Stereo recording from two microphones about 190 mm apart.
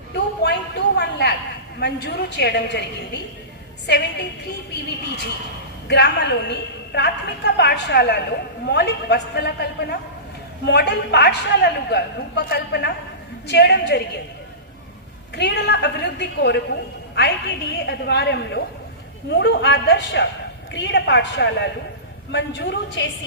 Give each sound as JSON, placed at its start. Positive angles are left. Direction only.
{"t": 0.4, "sound": "a sound", "side_deg": 60}
{"t": 1.8, "sound": "a woman's voice", "side_deg": 60}
{"t": 15.4, "sound": "a woman's voice", "side_deg": 60}